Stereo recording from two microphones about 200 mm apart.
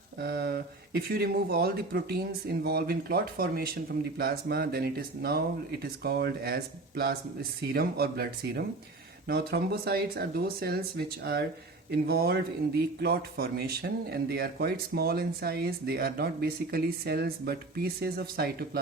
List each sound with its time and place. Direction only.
0.2 s speech: 50° right (ahead or behind)